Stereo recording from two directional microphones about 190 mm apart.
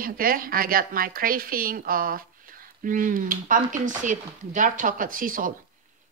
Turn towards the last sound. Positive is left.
turn(degrees=-45)  # may be behind; listen again after turning